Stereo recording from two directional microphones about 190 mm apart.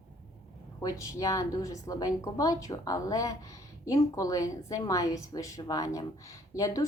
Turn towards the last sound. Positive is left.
turn(degrees=15)  # may be behind; listen again after turning